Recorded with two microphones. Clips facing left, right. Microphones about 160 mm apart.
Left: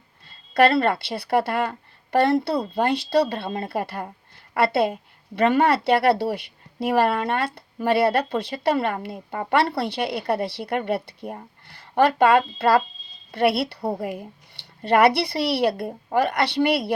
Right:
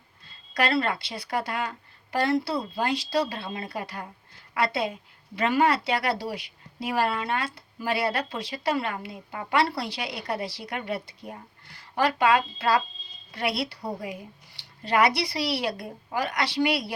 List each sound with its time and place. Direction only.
0.5 s a woman's voice: 55° left (ahead or behind)